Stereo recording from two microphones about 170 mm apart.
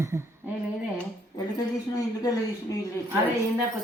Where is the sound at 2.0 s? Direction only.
20° left (ahead or behind).